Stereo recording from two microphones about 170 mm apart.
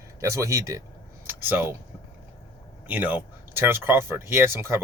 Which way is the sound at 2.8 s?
10° right (ahead or behind).